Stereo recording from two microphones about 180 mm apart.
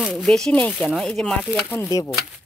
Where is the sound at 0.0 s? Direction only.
Centre (ahead or behind).